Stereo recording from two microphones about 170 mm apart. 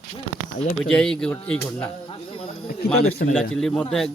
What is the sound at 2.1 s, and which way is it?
Snake, 30° left (ahead or behind).